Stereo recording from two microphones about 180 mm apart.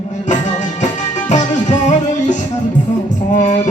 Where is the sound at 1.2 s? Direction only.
40° left (ahead or behind).